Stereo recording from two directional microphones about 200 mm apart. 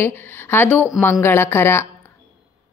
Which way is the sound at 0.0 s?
10° left (ahead or behind).